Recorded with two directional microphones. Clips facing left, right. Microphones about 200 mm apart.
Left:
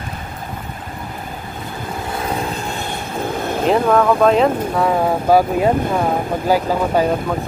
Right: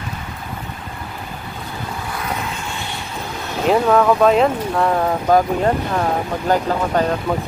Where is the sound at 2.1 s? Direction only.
30° left (ahead or behind).